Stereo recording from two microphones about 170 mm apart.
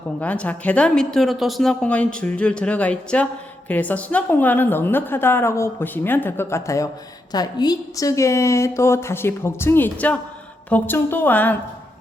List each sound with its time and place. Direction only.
0.2 s a woman's voice: 10° left (ahead or behind)